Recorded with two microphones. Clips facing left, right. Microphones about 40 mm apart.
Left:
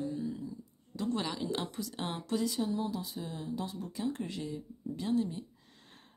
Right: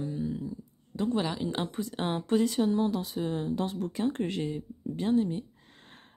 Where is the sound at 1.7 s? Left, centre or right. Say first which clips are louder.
Right 6 dB; right.